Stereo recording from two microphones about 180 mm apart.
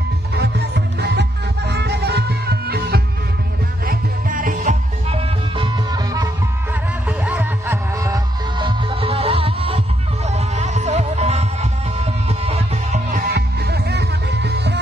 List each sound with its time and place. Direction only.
0.4 s music: 70° right (ahead or behind); by 5.2 s 45° right (ahead or behind)
5.6 s music: 20° right (ahead or behind)
7.1 s music: 10° right (ahead or behind); by 13.3 s 40° right (ahead or behind)
13.3 s music: 65° right (ahead or behind)